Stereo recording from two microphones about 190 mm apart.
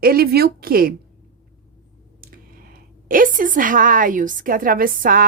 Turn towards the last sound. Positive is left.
turn(degrees=-50)  # may be behind; listen again after turning